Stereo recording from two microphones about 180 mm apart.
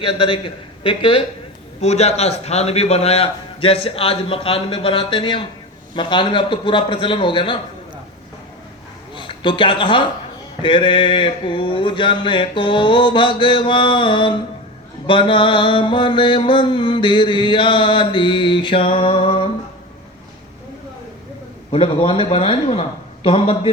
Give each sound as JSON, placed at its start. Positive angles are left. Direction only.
{"t": 0.0, "sound": "mantra", "side_deg": 30}
{"t": 1.8, "sound": "a man's voice", "side_deg": 35}
{"t": 5.9, "sound": "mantra", "side_deg": 25}
{"t": 9.1, "sound": "speech", "side_deg": 25}
{"t": 10.6, "sound": "mantra", "side_deg": 25}
{"t": 21.7, "sound": "a man's voice", "side_deg": 30}